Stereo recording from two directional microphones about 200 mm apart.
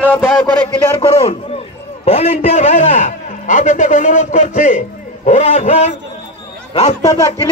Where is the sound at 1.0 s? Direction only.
30° left (ahead or behind).